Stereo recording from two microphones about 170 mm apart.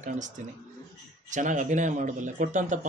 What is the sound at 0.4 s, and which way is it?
Speech, 45° right (ahead or behind).